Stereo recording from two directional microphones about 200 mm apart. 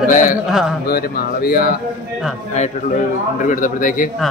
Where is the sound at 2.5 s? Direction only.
35° left (ahead or behind).